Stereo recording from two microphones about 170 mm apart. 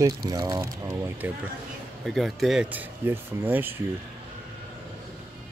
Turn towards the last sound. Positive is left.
turn(degrees=-10)  # may be behind; listen again after turning